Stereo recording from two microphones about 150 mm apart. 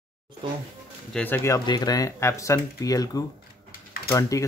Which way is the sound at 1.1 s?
10° left (ahead or behind).